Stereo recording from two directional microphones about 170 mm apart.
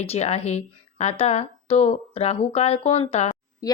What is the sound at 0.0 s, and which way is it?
Speech, 40° left (ahead or behind).